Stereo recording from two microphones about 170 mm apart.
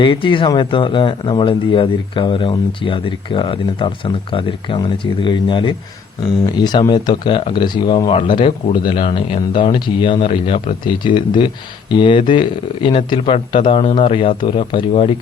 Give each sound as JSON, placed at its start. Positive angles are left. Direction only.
{"t": 0.0, "sound": "speech", "side_deg": 30}